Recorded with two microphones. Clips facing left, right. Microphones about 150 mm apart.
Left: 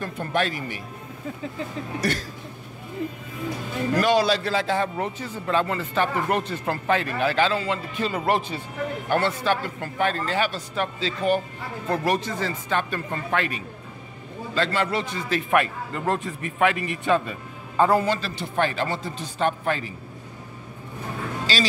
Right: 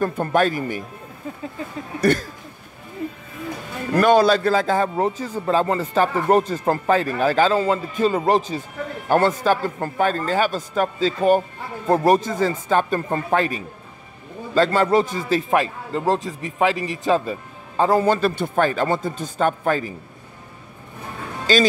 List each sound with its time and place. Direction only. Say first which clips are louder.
0.0 s a man's voice: right 7 dB; 45° right (ahead or behind)
2.0 s a man's voice: right 8 dB; 50° right (ahead or behind)
3.9 s a man's voice: right 6 dB; 55° right (ahead or behind)
21.5 s a man's voice: right 9 dB; 50° right (ahead or behind)